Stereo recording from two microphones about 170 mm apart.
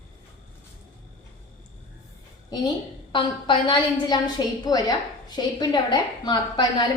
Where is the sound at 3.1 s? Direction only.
30° left (ahead or behind).